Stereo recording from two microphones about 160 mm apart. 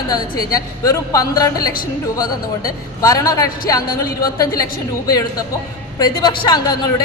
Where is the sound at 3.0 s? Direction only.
20° left (ahead or behind).